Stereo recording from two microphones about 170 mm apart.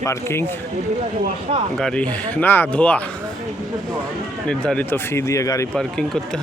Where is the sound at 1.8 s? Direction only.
5° left (ahead or behind).